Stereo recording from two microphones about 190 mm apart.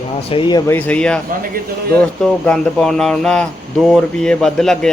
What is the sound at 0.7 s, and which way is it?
Speech, 10° left (ahead or behind).